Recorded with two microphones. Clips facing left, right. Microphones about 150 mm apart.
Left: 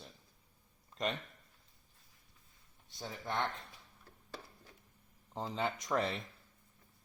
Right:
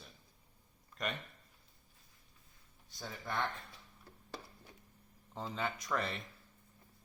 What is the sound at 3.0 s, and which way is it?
Speech, 25° left (ahead or behind).